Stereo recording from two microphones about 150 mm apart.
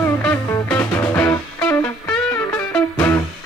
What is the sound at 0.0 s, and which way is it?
Music, 15° left (ahead or behind).